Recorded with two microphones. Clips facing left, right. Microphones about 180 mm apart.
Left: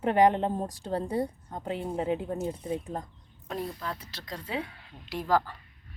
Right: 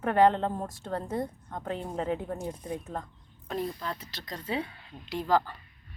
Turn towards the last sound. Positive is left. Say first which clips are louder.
# even
turn(degrees=0)  # may be behind; listen again after turning